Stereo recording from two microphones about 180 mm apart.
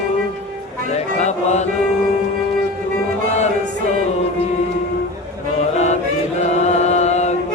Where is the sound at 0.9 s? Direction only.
40° left (ahead or behind).